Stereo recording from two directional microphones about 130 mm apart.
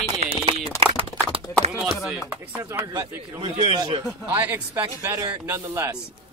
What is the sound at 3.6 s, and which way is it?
Speech, 40° right (ahead or behind).